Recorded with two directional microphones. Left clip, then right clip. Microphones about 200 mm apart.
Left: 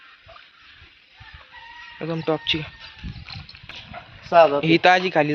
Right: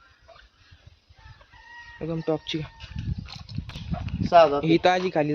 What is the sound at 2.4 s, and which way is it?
Speech, 10° right (ahead or behind).